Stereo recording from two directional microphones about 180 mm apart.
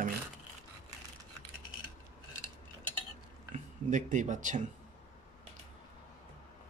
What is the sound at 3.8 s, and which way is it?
Speech, 45° right (ahead or behind).